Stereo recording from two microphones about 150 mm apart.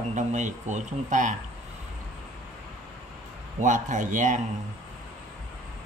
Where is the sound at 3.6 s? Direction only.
55° right (ahead or behind).